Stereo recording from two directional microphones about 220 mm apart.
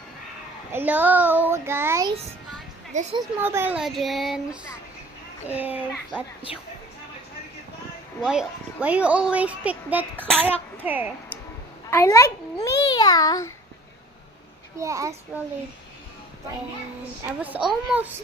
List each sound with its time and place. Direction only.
0.7 s a woman's voice: 10° right (ahead or behind)
2.9 s a child's voice: 35° right (ahead or behind)
3.4 s child singing: 10° right (ahead or behind)
5.5 s a woman's voice: 5° right (ahead or behind)
8.2 s a woman's voice: 5° right (ahead or behind)
11.9 s a child's voice: 10° left (ahead or behind)
14.8 s a woman's voice: 15° right (ahead or behind)
17.4 s a woman's voice: 5° right (ahead or behind)